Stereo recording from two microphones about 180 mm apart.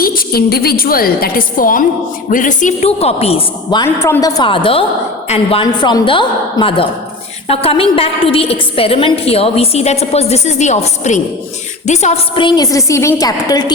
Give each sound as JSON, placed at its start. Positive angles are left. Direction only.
{"t": 0.0, "sound": "a woman's voice", "side_deg": 55}
{"t": 3.8, "sound": "a woman's voice", "side_deg": 15}